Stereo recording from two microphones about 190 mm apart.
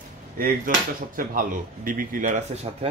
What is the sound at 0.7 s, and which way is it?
Speech, 45° right (ahead or behind).